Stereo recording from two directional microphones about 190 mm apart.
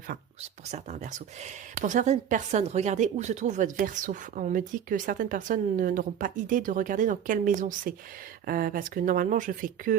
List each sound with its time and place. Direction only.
0.7 s speech: 35° right (ahead or behind)